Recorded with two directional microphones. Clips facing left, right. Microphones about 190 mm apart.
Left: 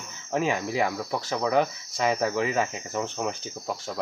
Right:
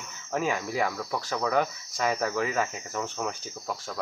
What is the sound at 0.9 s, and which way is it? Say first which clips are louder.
Speech: left 2 dB; 10° left (ahead or behind).